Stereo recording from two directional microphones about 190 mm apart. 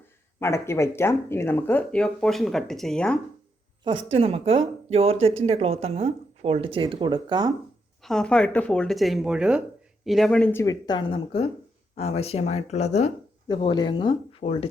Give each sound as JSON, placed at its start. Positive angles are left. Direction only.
{"t": 0.3, "sound": "speech", "side_deg": 15}
{"t": 4.1, "sound": "speech", "side_deg": -30}
{"t": 8.0, "sound": "speech", "side_deg": 5}
{"t": 13.5, "sound": "speech", "side_deg": 25}